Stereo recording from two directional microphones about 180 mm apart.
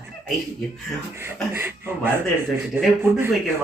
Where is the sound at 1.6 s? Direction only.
10° right (ahead or behind).